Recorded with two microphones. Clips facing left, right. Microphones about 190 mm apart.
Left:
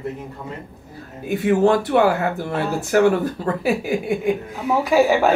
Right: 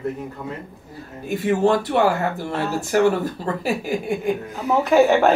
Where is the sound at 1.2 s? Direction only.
55° left (ahead or behind).